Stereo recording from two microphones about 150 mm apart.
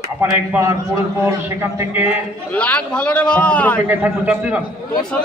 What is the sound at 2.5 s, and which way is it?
A man's voice, 10° left (ahead or behind).